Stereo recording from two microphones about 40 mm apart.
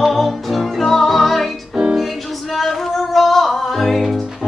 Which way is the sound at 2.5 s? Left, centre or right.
Centre.